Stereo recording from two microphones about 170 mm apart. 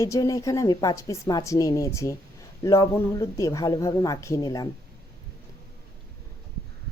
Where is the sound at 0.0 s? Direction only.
20° left (ahead or behind).